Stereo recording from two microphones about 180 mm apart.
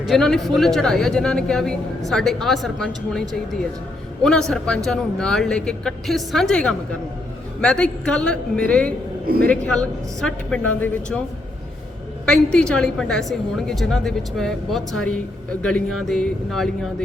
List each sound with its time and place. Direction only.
0.0 s a woman's voice: centre (ahead or behind)
9.2 s a man's voice: 55° right (ahead or behind)
9.5 s a woman's voice: 5° left (ahead or behind)
12.2 s a woman's voice: 5° left (ahead or behind)